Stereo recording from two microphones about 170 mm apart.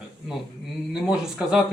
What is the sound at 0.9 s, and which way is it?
Speech, 5° right (ahead or behind).